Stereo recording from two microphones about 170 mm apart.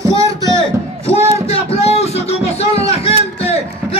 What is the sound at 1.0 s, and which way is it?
Music, 35° left (ahead or behind).